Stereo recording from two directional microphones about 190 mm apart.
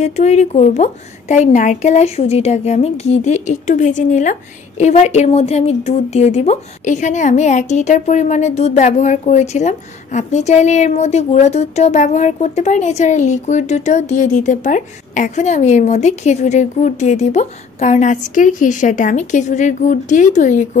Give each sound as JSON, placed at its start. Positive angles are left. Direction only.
{"t": 0.0, "sound": "a woman's voice", "side_deg": 35}